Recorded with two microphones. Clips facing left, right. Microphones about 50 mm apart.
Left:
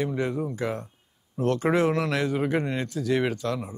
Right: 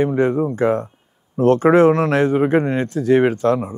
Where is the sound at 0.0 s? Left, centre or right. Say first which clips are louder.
Right 10 dB; right.